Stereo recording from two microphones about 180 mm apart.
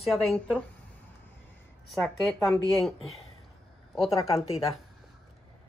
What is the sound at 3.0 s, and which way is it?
Speech, 35° left (ahead or behind).